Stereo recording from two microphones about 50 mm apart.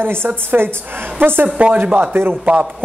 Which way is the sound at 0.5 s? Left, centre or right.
Right.